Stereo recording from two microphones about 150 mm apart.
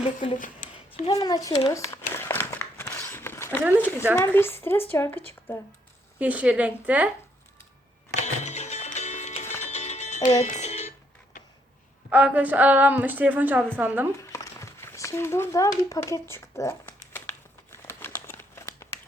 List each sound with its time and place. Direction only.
0.3 s a sound: 60° left (ahead or behind)
1.1 s speech: 25° left (ahead or behind)
2.1 s a sound: 15° left (ahead or behind)
4.1 s speech: 15° left (ahead or behind)
6.1 s a woman's voice: 10° right (ahead or behind)
8.2 s music: 50° left (ahead or behind)
11.3 s a sound: 55° left (ahead or behind)
12.1 s a woman's voice: 10° right (ahead or behind)
14.2 s speech: 20° left (ahead or behind)
17.1 s crumpling: 15° left (ahead or behind)